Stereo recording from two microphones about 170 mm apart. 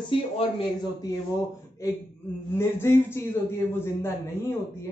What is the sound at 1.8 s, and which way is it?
A man's voice, 20° left (ahead or behind).